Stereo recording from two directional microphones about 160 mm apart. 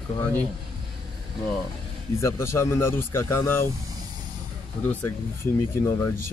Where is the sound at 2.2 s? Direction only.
15° left (ahead or behind).